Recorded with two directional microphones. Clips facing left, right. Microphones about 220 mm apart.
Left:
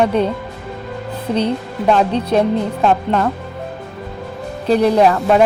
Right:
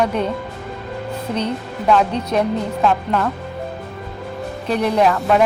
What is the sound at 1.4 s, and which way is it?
Speech, 30° left (ahead or behind).